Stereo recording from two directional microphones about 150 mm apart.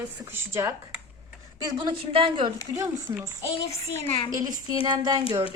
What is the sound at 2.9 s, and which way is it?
Speech, 15° right (ahead or behind).